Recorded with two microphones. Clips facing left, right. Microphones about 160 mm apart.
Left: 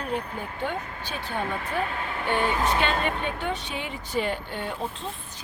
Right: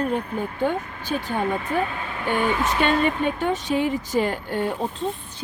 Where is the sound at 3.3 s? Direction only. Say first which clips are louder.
Right 8 dB; 45° right (ahead or behind).